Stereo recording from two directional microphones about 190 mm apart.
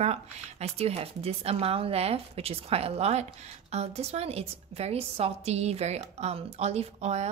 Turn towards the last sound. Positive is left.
turn(degrees=-35)  # may be behind; listen again after turning